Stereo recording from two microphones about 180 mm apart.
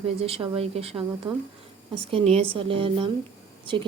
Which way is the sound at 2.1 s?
35° right (ahead or behind).